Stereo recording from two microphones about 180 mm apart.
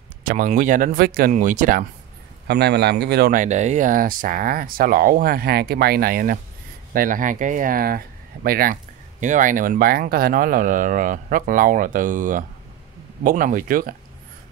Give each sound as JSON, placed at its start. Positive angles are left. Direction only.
{"t": 0.2, "sound": "speech", "side_deg": -50}
{"t": 1.3, "sound": "speech", "side_deg": -45}
{"t": 2.4, "sound": "speech", "side_deg": -65}
{"t": 9.2, "sound": "speech", "side_deg": -45}